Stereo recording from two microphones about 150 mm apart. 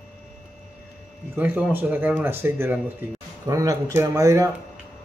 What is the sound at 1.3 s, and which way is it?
Speech, 10° right (ahead or behind).